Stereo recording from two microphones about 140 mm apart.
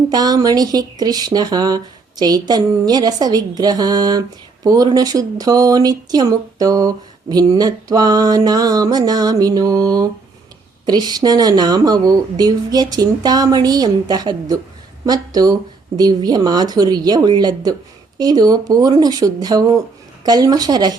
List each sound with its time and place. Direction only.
0.1 s speech: 25° right (ahead or behind)